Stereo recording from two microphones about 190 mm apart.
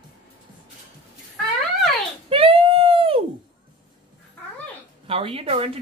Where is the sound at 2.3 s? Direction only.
30° right (ahead or behind).